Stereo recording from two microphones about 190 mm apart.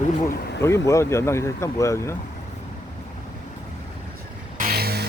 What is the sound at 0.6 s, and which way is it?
Speech, 15° left (ahead or behind).